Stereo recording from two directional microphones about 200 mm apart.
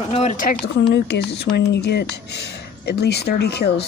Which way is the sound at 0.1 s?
35° left (ahead or behind).